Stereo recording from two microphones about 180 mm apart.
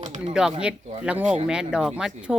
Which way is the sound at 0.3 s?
5° right (ahead or behind).